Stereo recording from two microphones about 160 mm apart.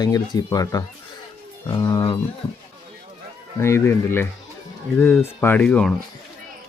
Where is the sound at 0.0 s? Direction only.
25° left (ahead or behind).